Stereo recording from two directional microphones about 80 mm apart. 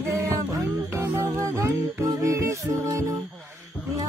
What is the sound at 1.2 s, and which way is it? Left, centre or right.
Music, right.